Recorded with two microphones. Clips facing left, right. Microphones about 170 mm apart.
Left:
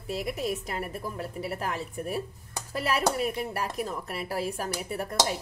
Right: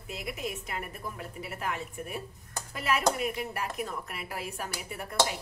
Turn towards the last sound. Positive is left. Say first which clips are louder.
# left 7 dB
turn(degrees=40)  # may be behind; listen again after turning